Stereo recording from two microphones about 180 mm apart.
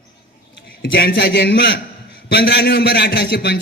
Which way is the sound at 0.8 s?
60° left (ahead or behind).